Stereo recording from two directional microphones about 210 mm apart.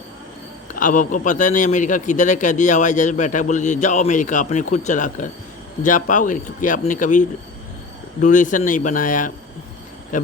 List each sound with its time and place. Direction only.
0.7 s a man's voice: 40° left (ahead or behind)